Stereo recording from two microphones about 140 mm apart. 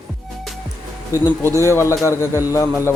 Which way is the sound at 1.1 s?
15° right (ahead or behind).